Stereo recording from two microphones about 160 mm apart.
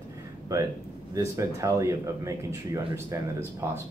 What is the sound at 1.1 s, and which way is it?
Speech, 20° right (ahead or behind).